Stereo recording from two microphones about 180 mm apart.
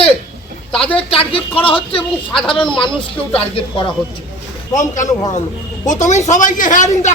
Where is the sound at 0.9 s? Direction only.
30° left (ahead or behind).